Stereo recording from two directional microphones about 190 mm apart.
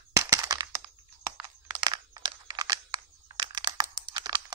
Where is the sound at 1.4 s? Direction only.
20° right (ahead or behind).